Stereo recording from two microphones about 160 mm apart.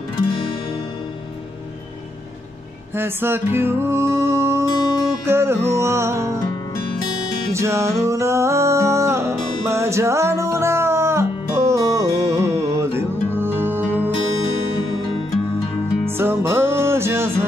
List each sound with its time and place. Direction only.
0.2 s music: 35° left (ahead or behind)
3.0 s music: 15° right (ahead or behind)
7.5 s music: 15° right (ahead or behind)
16.1 s music: 15° right (ahead or behind)